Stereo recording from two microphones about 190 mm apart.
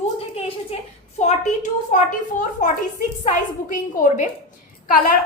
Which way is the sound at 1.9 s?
45° left (ahead or behind).